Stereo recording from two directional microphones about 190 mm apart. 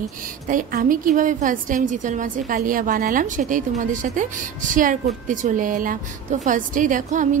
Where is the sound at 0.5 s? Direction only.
50° right (ahead or behind).